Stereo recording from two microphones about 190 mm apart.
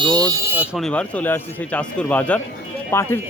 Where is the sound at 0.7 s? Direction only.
5° left (ahead or behind).